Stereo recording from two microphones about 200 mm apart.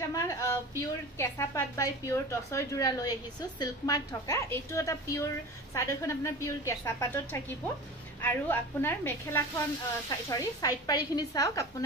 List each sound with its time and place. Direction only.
0.1 s a woman's voice: 15° left (ahead or behind)